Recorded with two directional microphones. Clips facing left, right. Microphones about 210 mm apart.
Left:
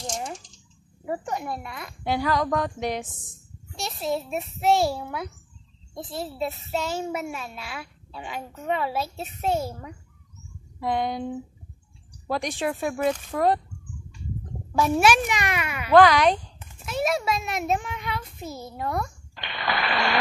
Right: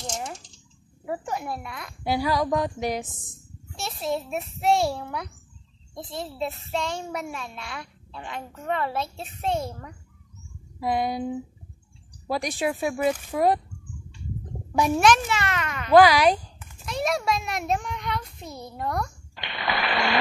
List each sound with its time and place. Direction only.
0.0 s typing: centre (ahead or behind)
1.0 s a child's voice: centre (ahead or behind)
10.8 s speech: 10° right (ahead or behind)
14.7 s a child's voice: 15° right (ahead or behind)
15.0 s a child's voice: 10° left (ahead or behind)
15.9 s speech: 10° right (ahead or behind)
16.8 s a child's voice: 5° left (ahead or behind)